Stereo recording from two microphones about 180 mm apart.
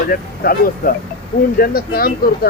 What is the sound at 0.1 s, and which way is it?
Speech, 55° left (ahead or behind).